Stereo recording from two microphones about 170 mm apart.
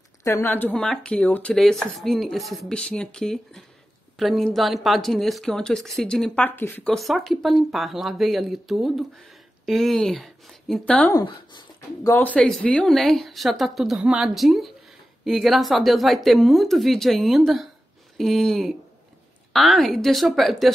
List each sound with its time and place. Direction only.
0.2 s speech: 15° left (ahead or behind)
11.1 s speech: 25° left (ahead or behind)
12.1 s speech: 10° left (ahead or behind)